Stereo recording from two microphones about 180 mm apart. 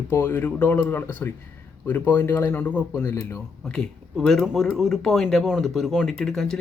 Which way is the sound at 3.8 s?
5° left (ahead or behind).